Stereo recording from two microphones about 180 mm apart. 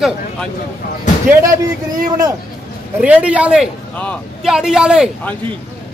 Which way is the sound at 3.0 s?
5° right (ahead or behind).